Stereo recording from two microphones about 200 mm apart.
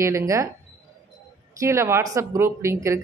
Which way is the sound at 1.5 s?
15° right (ahead or behind).